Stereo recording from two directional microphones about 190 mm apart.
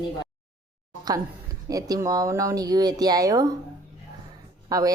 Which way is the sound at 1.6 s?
15° right (ahead or behind).